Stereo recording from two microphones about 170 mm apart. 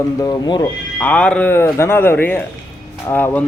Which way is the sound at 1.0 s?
5° left (ahead or behind).